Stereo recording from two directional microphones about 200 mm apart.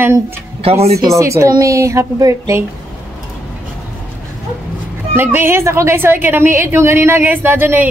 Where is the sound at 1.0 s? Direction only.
15° right (ahead or behind).